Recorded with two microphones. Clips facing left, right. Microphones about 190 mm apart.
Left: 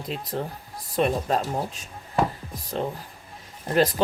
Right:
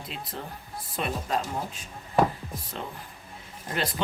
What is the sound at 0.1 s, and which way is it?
Speech, 40° left (ahead or behind).